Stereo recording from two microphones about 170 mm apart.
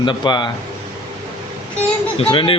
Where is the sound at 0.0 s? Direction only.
25° left (ahead or behind).